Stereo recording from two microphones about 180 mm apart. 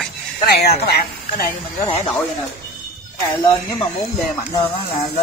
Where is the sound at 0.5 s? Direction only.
60° left (ahead or behind).